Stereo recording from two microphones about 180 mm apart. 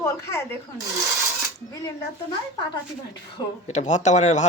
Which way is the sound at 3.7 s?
40° left (ahead or behind).